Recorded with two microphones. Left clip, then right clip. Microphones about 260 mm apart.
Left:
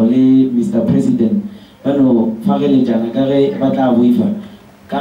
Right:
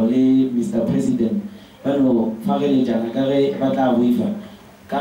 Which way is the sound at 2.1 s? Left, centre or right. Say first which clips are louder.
Left 5 dB; right.